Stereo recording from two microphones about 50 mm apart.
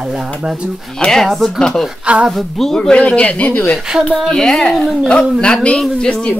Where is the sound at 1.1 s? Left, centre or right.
Centre.